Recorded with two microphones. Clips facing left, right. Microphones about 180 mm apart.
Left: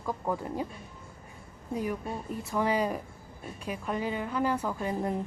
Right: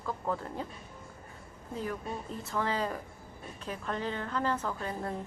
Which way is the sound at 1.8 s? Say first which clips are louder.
Left 3 dB; 15° left (ahead or behind).